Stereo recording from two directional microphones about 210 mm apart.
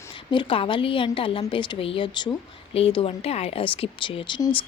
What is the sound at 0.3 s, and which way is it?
Speech, 25° left (ahead or behind).